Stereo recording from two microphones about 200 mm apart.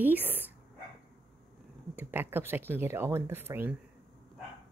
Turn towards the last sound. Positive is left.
turn(degrees=-10)  # may be behind; listen again after turning